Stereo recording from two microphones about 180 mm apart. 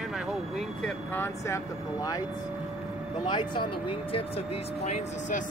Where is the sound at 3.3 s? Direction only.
25° left (ahead or behind).